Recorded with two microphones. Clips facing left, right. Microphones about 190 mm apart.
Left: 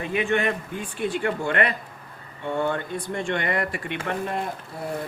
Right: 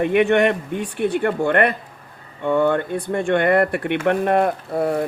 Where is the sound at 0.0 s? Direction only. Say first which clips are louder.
Right 8 dB; 65° right (ahead or behind).